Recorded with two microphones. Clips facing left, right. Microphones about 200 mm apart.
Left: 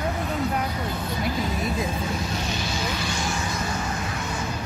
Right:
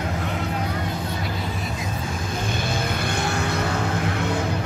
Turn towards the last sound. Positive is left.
turn(degrees=-60)  # may be behind; listen again after turning